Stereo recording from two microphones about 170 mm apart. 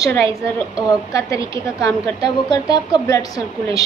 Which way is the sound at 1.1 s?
20° left (ahead or behind).